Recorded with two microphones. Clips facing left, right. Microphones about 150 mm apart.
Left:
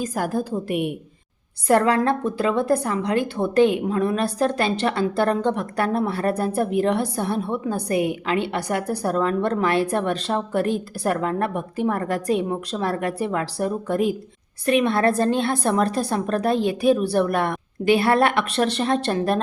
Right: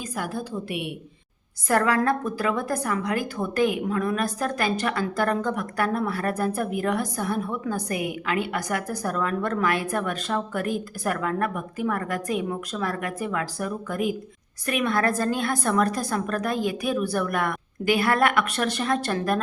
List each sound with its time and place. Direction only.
0.0 s a woman's voice: 45° left (ahead or behind)
1.6 s a woman's voice: 25° left (ahead or behind)